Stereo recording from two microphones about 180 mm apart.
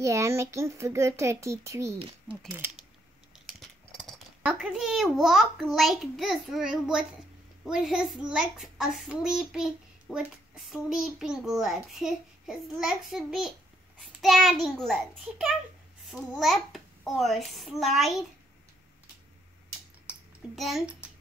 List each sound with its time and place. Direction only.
0.0 s speech: 15° right (ahead or behind)
3.3 s a sound: centre (ahead or behind)
4.4 s a child's voice: 5° right (ahead or behind)
20.5 s a child's voice: centre (ahead or behind)